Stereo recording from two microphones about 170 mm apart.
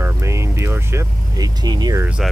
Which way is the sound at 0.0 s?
15° right (ahead or behind).